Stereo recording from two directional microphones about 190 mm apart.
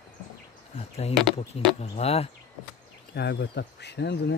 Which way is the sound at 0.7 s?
35° left (ahead or behind).